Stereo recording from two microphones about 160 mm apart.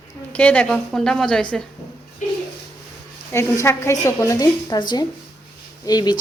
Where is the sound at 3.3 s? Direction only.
15° left (ahead or behind).